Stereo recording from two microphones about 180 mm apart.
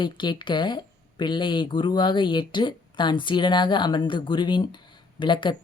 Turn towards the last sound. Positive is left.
turn(degrees=25)  # may be behind; listen again after turning